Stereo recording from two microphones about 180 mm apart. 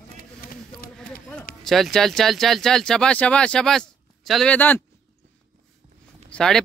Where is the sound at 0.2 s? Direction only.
55° left (ahead or behind).